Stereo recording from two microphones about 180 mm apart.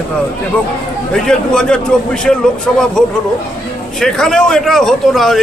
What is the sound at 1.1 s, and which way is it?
Speech, 5° left (ahead or behind).